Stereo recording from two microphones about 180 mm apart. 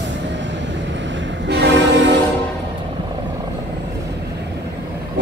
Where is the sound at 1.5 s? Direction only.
75° right (ahead or behind).